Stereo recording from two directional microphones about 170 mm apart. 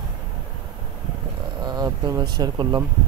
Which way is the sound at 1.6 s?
25° right (ahead or behind).